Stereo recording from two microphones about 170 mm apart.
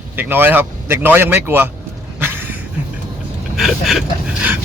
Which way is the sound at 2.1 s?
10° right (ahead or behind).